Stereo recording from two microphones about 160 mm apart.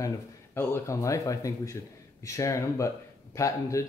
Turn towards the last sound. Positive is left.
turn(degrees=20)  # may be behind; listen again after turning